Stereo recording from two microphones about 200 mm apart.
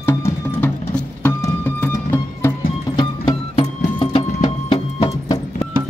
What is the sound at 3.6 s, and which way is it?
Music, 25° left (ahead or behind).